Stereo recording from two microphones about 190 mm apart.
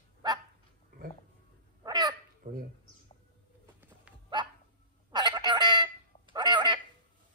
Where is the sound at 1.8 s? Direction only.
20° right (ahead or behind).